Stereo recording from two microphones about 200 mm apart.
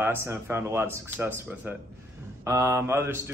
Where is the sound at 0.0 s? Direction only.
10° right (ahead or behind).